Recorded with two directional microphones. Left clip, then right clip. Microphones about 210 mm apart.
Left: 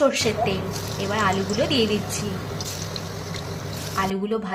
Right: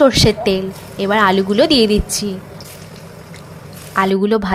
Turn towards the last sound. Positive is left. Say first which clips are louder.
# right 10 dB
turn(degrees=-40)  # may be behind; listen again after turning